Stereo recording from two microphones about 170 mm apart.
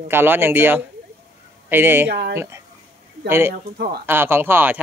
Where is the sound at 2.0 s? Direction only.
75° right (ahead or behind).